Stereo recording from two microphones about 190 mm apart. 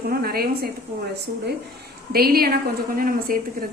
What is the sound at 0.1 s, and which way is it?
Speech, 55° right (ahead or behind).